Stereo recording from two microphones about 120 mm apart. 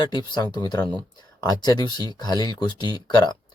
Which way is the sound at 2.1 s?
35° left (ahead or behind).